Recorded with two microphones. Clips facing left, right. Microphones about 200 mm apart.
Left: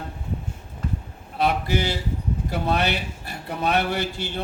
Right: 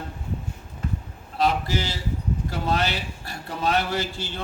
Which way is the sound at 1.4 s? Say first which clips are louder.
Left 1 dB; 60° left (ahead or behind).